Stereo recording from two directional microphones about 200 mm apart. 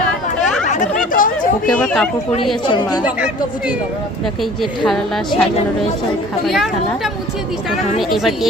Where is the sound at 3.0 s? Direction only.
5° right (ahead or behind).